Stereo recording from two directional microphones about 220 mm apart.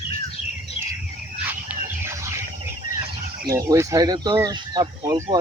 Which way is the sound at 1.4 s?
10° right (ahead or behind).